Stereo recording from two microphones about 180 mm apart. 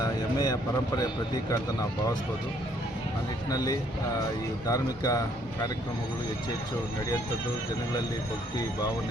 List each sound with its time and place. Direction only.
0.0 s speech: 20° left (ahead or behind)
3.5 s speech: 20° left (ahead or behind)